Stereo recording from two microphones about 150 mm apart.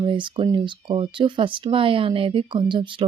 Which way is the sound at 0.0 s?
35° right (ahead or behind).